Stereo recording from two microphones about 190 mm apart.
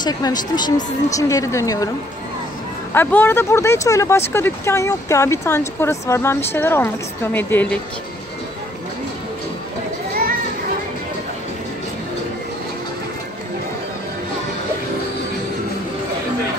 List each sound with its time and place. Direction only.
0.0 s speech: 20° left (ahead or behind)
2.9 s speech: 10° left (ahead or behind)